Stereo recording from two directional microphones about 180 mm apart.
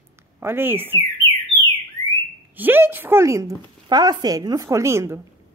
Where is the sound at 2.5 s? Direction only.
10° right (ahead or behind).